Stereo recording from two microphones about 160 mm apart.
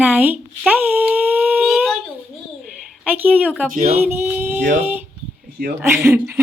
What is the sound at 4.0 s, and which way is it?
Speech, 15° right (ahead or behind).